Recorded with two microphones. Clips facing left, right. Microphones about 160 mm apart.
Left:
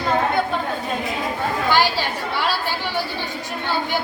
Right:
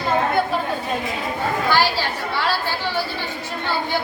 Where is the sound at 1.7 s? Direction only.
15° left (ahead or behind).